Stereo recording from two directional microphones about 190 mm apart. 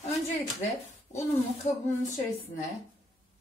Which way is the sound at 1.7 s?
40° left (ahead or behind).